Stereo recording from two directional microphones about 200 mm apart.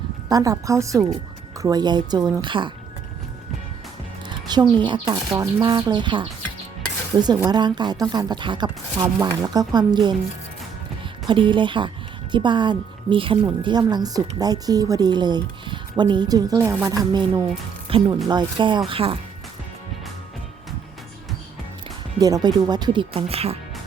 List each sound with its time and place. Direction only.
0.3 s a woman's voice: 15° right (ahead or behind)
4.3 s a woman's voice: 20° right (ahead or behind)
7.5 s a woman's voice: 20° right (ahead or behind)
11.3 s a woman's voice: 25° right (ahead or behind)
22.2 s a woman's voice: 20° right (ahead or behind)